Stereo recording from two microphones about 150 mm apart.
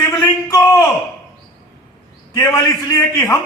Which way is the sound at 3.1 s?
25° left (ahead or behind).